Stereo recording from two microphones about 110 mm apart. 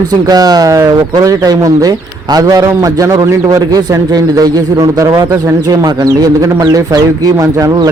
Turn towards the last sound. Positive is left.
turn(degrees=-30)  # may be behind; listen again after turning